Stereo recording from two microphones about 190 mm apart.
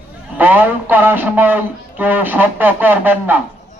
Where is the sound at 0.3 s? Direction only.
10° right (ahead or behind).